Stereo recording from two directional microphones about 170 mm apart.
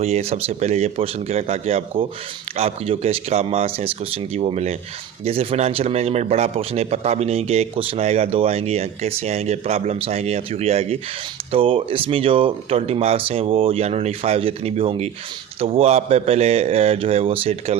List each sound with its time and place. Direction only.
0.0 s speech: 35° right (ahead or behind)